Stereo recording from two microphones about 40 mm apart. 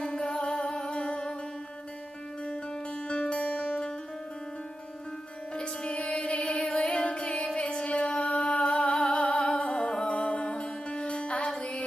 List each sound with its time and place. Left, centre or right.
0.0 s music: left
3.1 s music: left
5.6 s music: left